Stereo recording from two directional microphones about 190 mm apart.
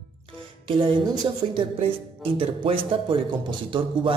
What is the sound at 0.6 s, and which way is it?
Speech, 25° right (ahead or behind).